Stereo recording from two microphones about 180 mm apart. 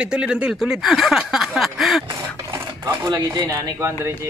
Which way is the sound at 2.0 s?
20° right (ahead or behind).